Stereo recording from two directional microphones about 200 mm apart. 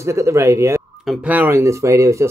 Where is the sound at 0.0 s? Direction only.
15° right (ahead or behind).